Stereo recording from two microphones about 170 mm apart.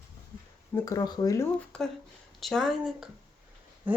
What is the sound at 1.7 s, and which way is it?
A woman's voice, 5° left (ahead or behind).